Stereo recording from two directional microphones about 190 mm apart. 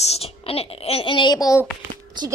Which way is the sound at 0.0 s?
35° left (ahead or behind).